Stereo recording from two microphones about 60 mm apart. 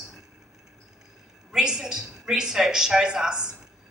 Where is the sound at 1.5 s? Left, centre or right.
Centre.